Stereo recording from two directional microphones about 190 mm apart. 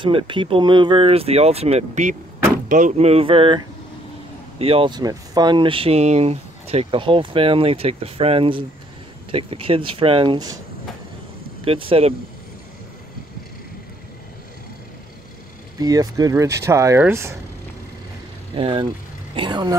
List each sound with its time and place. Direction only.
0.0 s speech: 25° right (ahead or behind)
11.6 s speech: 30° right (ahead or behind)
15.8 s speech: 20° right (ahead or behind)
18.5 s speech: 25° right (ahead or behind)